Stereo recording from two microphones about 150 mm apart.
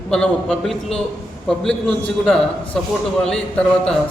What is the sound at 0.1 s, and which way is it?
A man's voice, centre (ahead or behind).